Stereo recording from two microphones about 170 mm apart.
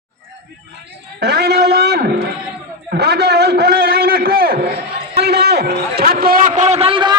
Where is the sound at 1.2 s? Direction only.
65° right (ahead or behind).